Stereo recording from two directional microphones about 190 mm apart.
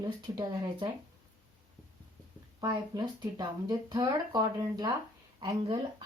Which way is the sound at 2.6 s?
20° right (ahead or behind).